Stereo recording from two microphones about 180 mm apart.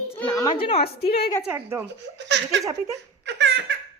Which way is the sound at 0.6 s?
35° left (ahead or behind).